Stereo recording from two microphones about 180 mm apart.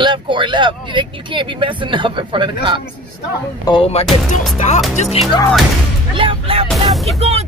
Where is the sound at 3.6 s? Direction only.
25° left (ahead or behind).